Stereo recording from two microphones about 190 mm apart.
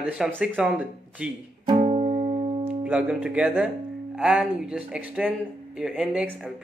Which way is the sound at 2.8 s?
5° right (ahead or behind).